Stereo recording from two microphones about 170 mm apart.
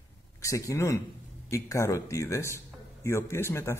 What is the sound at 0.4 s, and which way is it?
A man's voice, 20° left (ahead or behind).